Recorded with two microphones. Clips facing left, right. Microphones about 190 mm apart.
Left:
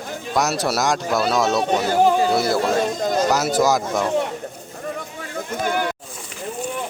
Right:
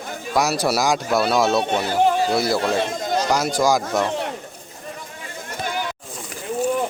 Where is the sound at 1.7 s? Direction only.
45° left (ahead or behind).